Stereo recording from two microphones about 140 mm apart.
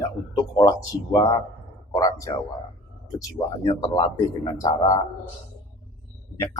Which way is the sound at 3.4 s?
20° left (ahead or behind).